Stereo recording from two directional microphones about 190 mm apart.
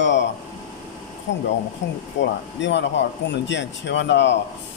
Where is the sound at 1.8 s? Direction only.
70° left (ahead or behind).